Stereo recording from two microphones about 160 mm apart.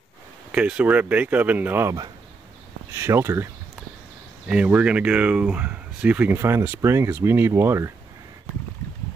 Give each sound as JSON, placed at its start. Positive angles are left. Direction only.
{"t": 0.5, "sound": "speech", "side_deg": -5}
{"t": 4.5, "sound": "speech", "side_deg": -10}